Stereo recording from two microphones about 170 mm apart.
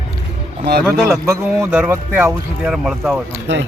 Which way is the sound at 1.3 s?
10° right (ahead or behind).